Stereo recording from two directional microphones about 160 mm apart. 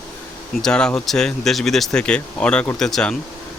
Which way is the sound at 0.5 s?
5° left (ahead or behind).